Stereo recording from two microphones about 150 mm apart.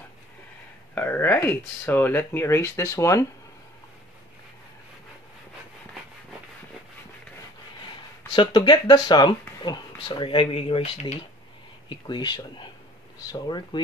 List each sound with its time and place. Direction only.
0.9 s speech: 15° left (ahead or behind)
8.3 s speech: 30° left (ahead or behind)
11.9 s speech: 30° left (ahead or behind)